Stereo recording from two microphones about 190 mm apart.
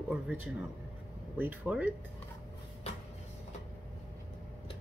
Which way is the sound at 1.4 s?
10° right (ahead or behind).